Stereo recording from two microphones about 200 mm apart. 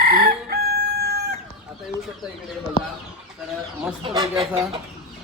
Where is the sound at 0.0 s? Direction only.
50° right (ahead or behind).